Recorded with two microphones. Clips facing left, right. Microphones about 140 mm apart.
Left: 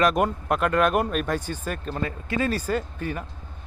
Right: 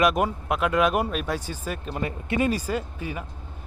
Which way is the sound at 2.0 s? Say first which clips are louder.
Right 2 dB; 20° right (ahead or behind).